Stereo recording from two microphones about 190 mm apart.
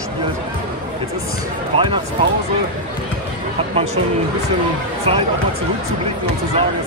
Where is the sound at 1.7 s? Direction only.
25° right (ahead or behind).